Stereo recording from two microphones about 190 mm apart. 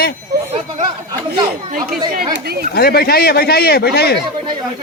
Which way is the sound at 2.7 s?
55° left (ahead or behind).